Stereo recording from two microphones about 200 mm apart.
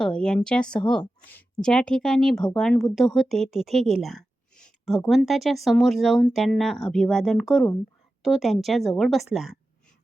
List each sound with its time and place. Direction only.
0.0 s speech: 5° left (ahead or behind)